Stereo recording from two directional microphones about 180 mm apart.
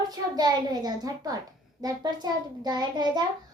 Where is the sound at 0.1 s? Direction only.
20° right (ahead or behind).